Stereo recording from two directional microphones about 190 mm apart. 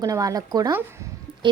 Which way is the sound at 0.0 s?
20° right (ahead or behind).